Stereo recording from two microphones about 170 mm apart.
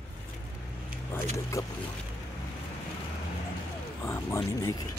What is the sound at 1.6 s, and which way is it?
Speech, 20° left (ahead or behind).